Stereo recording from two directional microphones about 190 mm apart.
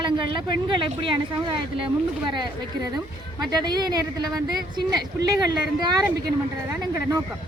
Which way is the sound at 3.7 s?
20° right (ahead or behind).